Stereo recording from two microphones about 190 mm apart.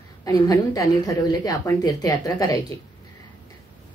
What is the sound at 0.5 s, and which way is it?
A woman's voice, 15° left (ahead or behind).